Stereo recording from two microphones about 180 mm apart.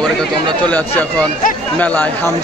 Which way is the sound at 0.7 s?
10° left (ahead or behind).